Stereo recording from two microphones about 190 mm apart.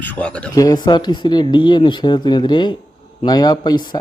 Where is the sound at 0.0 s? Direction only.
5° left (ahead or behind).